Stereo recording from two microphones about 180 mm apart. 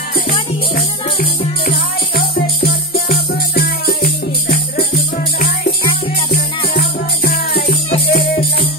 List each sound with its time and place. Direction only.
2.1 s music: 60° left (ahead or behind)
8.1 s music: 65° left (ahead or behind)